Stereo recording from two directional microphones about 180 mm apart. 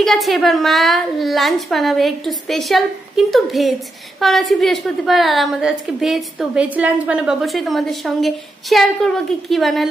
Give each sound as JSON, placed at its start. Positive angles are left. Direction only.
{"t": 0.0, "sound": "a woman's voice", "side_deg": 0}